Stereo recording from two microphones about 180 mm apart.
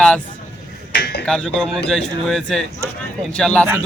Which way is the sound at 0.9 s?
65° left (ahead or behind).